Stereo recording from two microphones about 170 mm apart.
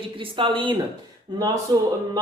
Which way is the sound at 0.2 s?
30° right (ahead or behind).